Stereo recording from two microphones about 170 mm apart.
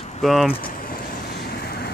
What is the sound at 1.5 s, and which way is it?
Vehicle, 70° left (ahead or behind).